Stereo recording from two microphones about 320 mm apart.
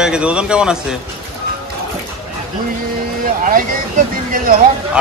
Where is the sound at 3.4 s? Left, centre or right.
Right.